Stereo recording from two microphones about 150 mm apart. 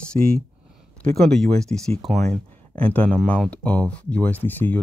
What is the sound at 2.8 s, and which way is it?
Speech, 10° left (ahead or behind).